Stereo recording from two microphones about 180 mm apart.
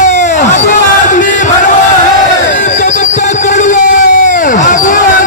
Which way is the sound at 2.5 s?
40° left (ahead or behind).